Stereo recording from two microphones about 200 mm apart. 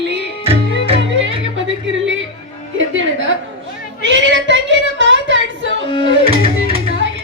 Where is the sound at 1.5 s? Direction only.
65° right (ahead or behind).